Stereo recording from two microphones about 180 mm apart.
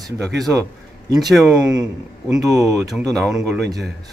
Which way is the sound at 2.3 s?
20° right (ahead or behind).